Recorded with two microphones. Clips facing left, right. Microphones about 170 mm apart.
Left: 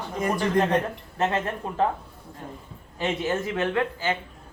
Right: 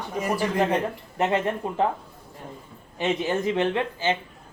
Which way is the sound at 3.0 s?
20° right (ahead or behind).